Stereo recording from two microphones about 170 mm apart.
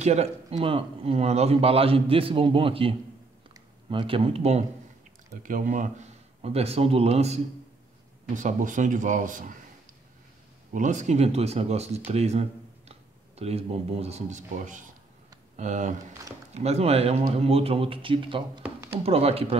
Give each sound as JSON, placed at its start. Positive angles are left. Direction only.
{"t": 0.0, "sound": "a man's voice", "side_deg": -40}
{"t": 5.4, "sound": "a man's voice", "side_deg": -50}
{"t": 10.7, "sound": "a man's voice", "side_deg": -45}
{"t": 18.6, "sound": "a sound", "side_deg": -15}
{"t": 19.0, "sound": "a man's voice", "side_deg": -35}